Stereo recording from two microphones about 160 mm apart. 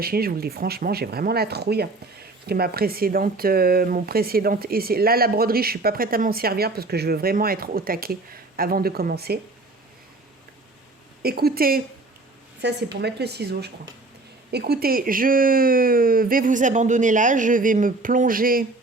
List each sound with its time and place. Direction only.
0.0 s speech: 70° right (ahead or behind); by 1.9 s 90° right
2.5 s speech: 70° right (ahead or behind)
11.2 s speech: 75° right (ahead or behind)
12.6 s a woman's voice: 90° right
14.5 s speech: 75° right (ahead or behind)